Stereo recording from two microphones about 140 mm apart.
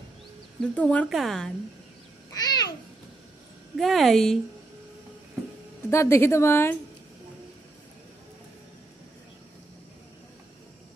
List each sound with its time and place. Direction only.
0.7 s speech: 10° left (ahead or behind)
2.3 s babbling: 30° left (ahead or behind)
3.7 s speech: centre (ahead or behind)
5.9 s a woman's voice: 20° left (ahead or behind)